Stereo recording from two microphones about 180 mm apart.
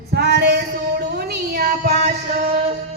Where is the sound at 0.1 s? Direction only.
70° right (ahead or behind).